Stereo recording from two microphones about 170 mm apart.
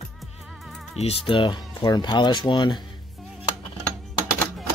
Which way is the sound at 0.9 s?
35° left (ahead or behind).